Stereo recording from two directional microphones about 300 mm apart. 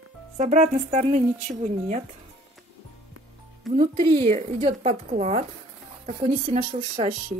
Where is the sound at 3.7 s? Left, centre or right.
Centre.